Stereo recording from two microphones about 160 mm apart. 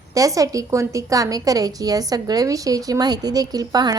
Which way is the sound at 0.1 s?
20° right (ahead or behind).